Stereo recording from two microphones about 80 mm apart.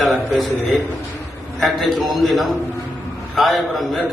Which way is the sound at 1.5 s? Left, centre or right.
Centre.